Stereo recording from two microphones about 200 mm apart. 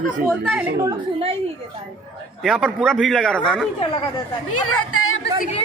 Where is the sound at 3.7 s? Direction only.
25° left (ahead or behind).